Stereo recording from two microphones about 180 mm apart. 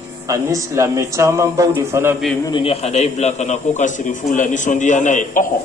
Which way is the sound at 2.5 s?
30° left (ahead or behind).